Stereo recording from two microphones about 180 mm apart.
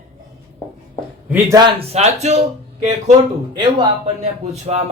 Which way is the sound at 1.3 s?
20° right (ahead or behind).